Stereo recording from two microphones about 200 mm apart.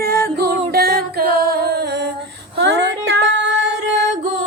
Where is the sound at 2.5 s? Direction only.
60° right (ahead or behind).